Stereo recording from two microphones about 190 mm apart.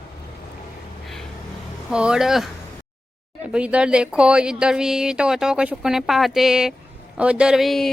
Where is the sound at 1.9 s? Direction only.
5° right (ahead or behind).